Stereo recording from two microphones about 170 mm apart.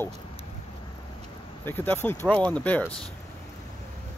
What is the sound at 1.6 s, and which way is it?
Speech, 10° left (ahead or behind).